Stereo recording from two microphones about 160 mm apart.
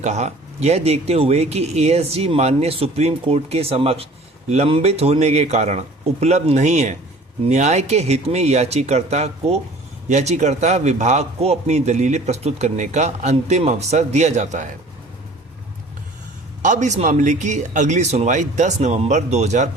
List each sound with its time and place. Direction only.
0.0 s a man's voice: 45° right (ahead or behind)
16.6 s a man's voice: 50° right (ahead or behind)